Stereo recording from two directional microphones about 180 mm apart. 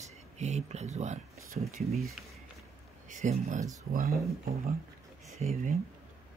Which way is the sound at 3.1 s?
45° right (ahead or behind).